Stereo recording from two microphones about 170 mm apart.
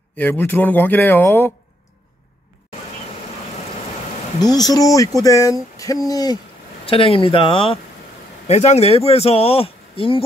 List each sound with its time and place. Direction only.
0.2 s speech: 10° left (ahead or behind)
4.4 s speech: 20° left (ahead or behind)
6.9 s speech: 30° left (ahead or behind)